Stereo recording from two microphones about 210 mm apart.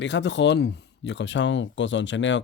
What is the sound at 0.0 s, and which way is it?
Speech, 55° left (ahead or behind).